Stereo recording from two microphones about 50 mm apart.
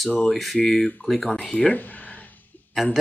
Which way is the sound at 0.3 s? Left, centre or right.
Centre.